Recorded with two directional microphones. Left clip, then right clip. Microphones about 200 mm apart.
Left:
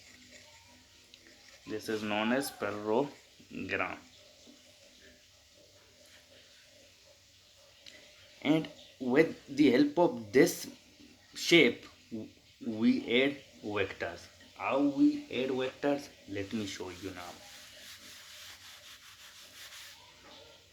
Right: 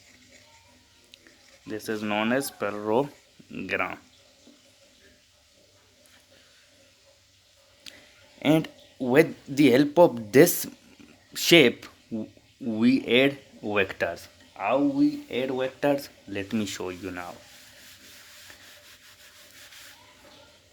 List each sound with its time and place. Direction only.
1.7 s speech: 60° right (ahead or behind)
7.9 s a sound: 55° right (ahead or behind)
8.4 s speech: 60° right (ahead or behind)